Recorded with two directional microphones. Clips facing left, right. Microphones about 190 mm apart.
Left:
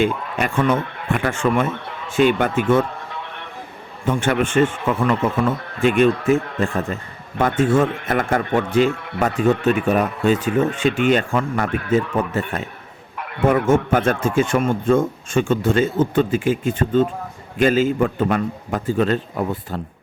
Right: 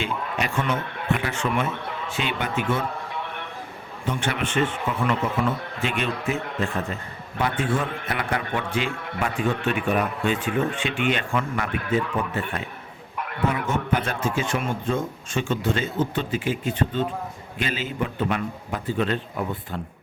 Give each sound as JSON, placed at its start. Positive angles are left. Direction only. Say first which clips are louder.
{"t": 0.0, "sound": "speech", "louder": "left 7 dB", "side_deg": 50}
{"t": 4.0, "sound": "speech", "louder": "left 8 dB", "side_deg": 50}